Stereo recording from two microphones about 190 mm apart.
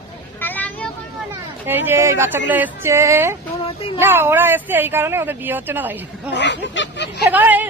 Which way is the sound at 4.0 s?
10° right (ahead or behind).